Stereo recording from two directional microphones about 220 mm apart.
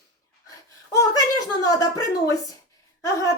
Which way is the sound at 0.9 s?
15° left (ahead or behind).